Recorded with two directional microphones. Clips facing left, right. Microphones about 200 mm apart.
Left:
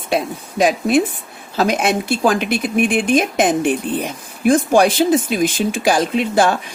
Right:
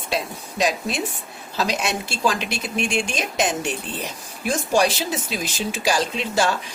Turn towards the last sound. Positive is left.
turn(degrees=55)  # may be behind; listen again after turning